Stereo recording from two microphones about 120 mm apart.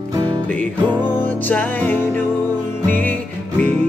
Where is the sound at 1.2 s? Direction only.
15° left (ahead or behind).